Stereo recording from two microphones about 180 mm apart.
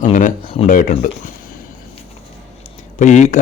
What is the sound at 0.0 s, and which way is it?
Speech, 45° left (ahead or behind).